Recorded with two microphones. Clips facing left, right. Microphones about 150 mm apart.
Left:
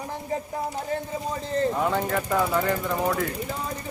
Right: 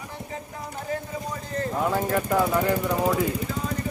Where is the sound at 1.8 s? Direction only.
5° right (ahead or behind).